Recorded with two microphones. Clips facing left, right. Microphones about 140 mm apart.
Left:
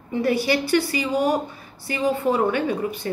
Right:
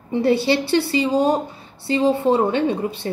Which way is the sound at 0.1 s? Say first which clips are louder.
Right 3 dB; 25° right (ahead or behind).